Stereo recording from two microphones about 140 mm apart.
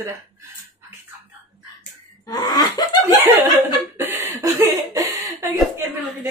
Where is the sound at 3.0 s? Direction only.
25° right (ahead or behind).